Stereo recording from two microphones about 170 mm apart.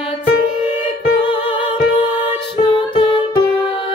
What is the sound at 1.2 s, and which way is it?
Music, 30° left (ahead or behind).